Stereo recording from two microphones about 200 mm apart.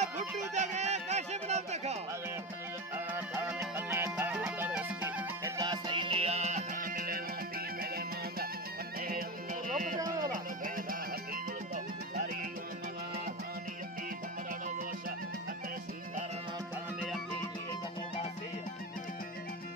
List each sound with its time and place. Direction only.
0.6 s a sound: 35° right (ahead or behind)
3.1 s music: 10° right (ahead or behind)
5.6 s music: 25° right (ahead or behind); by 11.0 s 45° right (ahead or behind)